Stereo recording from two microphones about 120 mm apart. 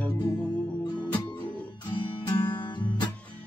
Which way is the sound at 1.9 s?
40° left (ahead or behind).